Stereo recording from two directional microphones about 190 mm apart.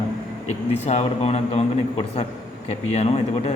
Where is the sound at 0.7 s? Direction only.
35° left (ahead or behind).